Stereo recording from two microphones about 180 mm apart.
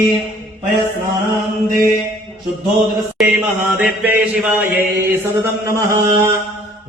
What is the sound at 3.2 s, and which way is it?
Mantra, 5° right (ahead or behind).